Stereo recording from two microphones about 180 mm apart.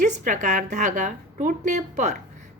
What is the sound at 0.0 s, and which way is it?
A woman's voice, 45° right (ahead or behind).